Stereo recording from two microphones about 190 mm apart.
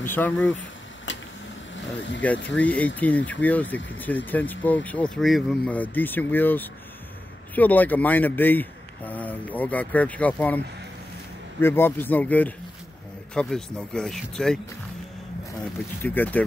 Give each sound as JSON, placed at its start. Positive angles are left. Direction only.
{"t": 0.0, "sound": "speech", "side_deg": 10}
{"t": 1.1, "sound": "a sound", "side_deg": 75}
{"t": 2.0, "sound": "speech", "side_deg": 70}
{"t": 2.4, "sound": "speech", "side_deg": 5}
{"t": 11.6, "sound": "speech", "side_deg": 10}
{"t": 16.0, "sound": "speech", "side_deg": 10}